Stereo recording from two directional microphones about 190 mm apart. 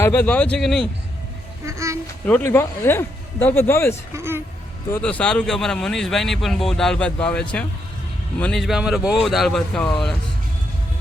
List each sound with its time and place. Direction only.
0.0 s speech: 10° left (ahead or behind)
1.6 s speech: 15° right (ahead or behind)
2.2 s speech: 10° left (ahead or behind)
4.1 s speech: 10° right (ahead or behind)
4.9 s speech: 10° left (ahead or behind)